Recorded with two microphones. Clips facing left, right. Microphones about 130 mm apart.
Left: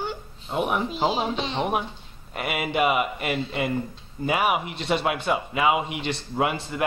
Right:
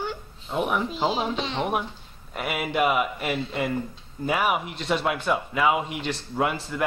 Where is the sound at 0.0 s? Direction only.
10° left (ahead or behind).